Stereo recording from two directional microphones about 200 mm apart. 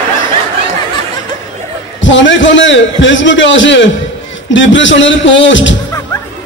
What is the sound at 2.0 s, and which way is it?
A man's voice, 65° left (ahead or behind).